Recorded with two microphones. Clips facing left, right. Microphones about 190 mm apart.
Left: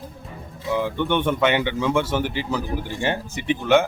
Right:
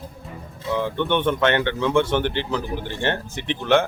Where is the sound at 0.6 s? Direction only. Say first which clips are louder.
Even; 15° left (ahead or behind).